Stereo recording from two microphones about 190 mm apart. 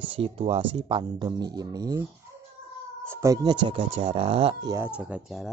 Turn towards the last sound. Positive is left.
turn(degrees=-5)  # may be behind; listen again after turning